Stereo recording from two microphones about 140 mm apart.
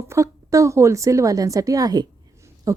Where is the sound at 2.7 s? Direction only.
25° right (ahead or behind).